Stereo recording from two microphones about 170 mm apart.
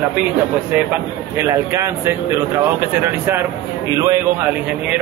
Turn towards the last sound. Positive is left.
turn(degrees=-20)  # may be behind; listen again after turning